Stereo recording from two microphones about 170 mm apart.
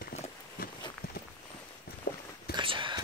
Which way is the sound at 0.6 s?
60° left (ahead or behind).